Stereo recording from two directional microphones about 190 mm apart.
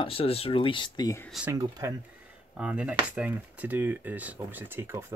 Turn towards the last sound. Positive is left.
turn(degrees=-10)  # may be behind; listen again after turning